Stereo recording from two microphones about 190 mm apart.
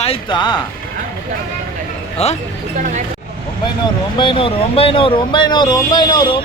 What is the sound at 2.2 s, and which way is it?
Speech, 35° left (ahead or behind).